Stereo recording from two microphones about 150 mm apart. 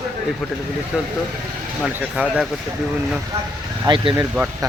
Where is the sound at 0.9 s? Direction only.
5° right (ahead or behind).